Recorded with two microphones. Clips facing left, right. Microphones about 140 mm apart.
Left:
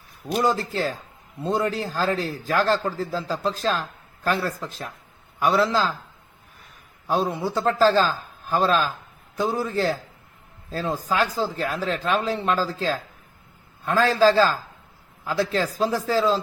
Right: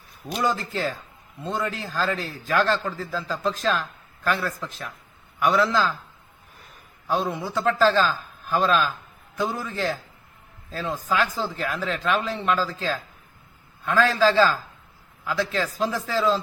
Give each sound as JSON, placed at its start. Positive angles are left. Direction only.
{"t": 0.3, "sound": "speech", "side_deg": 40}
{"t": 7.2, "sound": "speech", "side_deg": 35}
{"t": 13.8, "sound": "speech", "side_deg": 35}